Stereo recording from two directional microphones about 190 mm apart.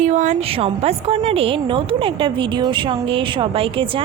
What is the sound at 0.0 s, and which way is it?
A woman's voice, 40° right (ahead or behind).